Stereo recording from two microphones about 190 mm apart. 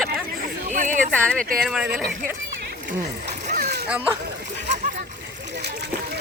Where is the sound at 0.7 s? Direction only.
40° right (ahead or behind).